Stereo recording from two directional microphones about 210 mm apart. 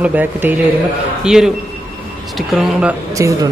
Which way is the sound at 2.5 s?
5° right (ahead or behind).